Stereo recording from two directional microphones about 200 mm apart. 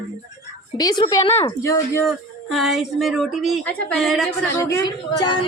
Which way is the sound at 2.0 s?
Centre (ahead or behind).